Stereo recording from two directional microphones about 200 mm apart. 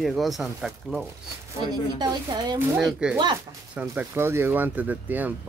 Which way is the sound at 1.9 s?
20° right (ahead or behind).